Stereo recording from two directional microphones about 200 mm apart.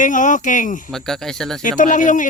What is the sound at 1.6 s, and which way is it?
Speech, 40° left (ahead or behind).